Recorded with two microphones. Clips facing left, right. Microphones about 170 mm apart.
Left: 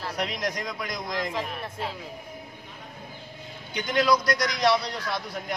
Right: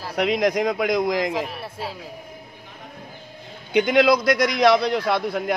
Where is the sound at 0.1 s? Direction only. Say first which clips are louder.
Right 12 dB; 65° right (ahead or behind).